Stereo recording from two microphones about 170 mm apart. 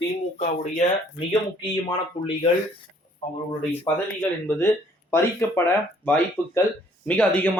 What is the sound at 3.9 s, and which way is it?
Speech, 10° left (ahead or behind).